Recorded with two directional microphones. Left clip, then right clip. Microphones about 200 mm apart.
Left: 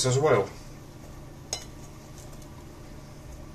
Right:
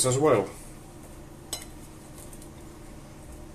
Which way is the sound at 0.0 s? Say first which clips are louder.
Right 1 dB; 15° right (ahead or behind).